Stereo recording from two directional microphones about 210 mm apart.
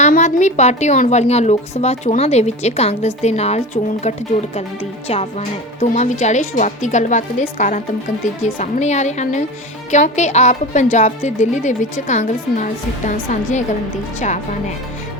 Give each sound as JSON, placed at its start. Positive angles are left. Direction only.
{"t": 0.0, "sound": "a woman's voice", "side_deg": 35}
{"t": 5.0, "sound": "a woman's voice", "side_deg": 30}